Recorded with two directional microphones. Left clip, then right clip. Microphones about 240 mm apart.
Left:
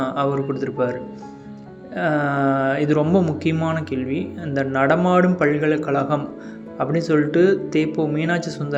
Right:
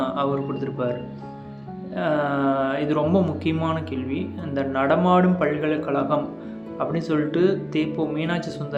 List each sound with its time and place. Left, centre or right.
0.0 s speech: centre
2.0 s speech: centre